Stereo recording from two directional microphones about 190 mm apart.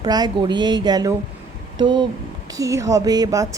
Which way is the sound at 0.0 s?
20° right (ahead or behind).